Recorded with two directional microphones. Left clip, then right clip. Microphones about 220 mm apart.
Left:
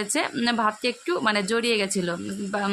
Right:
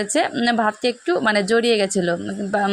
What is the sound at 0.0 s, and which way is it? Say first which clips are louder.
A woman's voice: right 6 dB; 20° right (ahead or behind).